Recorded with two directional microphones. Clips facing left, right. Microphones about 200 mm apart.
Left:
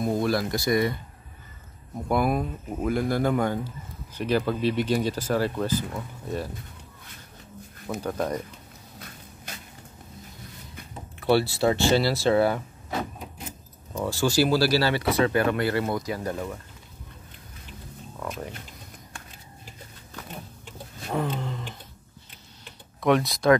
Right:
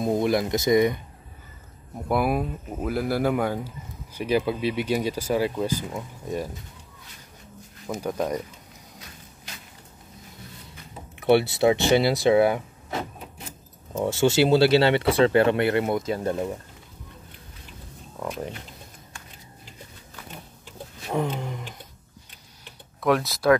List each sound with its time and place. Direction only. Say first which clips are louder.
0.0 s speech: right 2 dB; 20° right (ahead or behind)
2.0 s speech: right 1 dB; 5° right (ahead or behind)
8.0 s speech: right 1 dB; 10° right (ahead or behind)
11.1 s speech: right 3 dB; 20° right (ahead or behind)
13.9 s speech: right 3 dB; 20° right (ahead or behind)
21.1 s roaring cats: right 1 dB; 15° right (ahead or behind)
22.9 s speech: left 1 dB; centre (ahead or behind)